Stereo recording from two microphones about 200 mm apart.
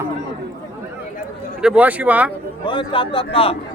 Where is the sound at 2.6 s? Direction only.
25° left (ahead or behind).